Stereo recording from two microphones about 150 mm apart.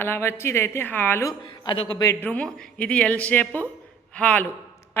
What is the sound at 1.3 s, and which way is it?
Speech, 30° left (ahead or behind).